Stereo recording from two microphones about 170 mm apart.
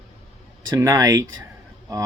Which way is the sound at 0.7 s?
20° right (ahead or behind).